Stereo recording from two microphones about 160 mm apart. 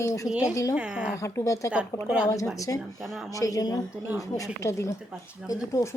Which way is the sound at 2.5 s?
20° left (ahead or behind).